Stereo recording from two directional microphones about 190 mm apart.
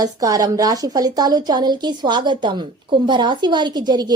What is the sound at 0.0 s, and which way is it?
A woman's voice, 20° right (ahead or behind).